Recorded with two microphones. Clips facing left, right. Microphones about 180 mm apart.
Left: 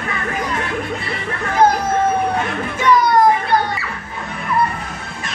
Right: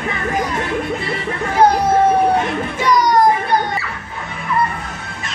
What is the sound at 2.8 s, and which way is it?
Children playing, 40° right (ahead or behind).